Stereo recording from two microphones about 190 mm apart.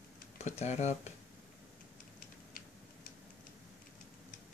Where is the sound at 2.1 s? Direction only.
50° left (ahead or behind).